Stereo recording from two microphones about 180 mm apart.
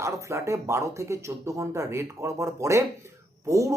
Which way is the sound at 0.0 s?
15° right (ahead or behind).